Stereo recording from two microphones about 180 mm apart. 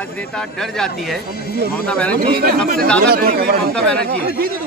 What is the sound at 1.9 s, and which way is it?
Speech, 5° left (ahead or behind).